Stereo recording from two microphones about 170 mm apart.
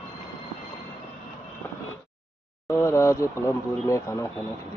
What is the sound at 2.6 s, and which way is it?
Speech, 15° left (ahead or behind).